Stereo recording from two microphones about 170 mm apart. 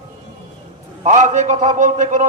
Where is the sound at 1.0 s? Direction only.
45° right (ahead or behind).